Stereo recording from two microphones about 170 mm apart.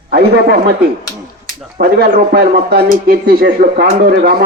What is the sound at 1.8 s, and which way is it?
Speech, 85° right.